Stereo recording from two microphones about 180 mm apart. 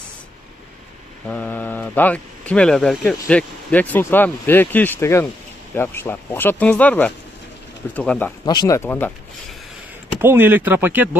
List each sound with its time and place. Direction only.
1.2 s speech: 5° left (ahead or behind)
8.5 s speech: 20° left (ahead or behind)
10.2 s speech: 10° right (ahead or behind)